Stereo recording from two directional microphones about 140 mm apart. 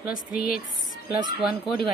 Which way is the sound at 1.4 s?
5° right (ahead or behind).